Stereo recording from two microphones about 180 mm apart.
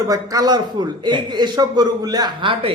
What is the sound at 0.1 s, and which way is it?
A man's voice, 20° right (ahead or behind).